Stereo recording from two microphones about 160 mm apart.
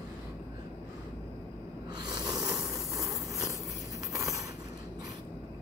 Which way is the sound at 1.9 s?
25° right (ahead or behind).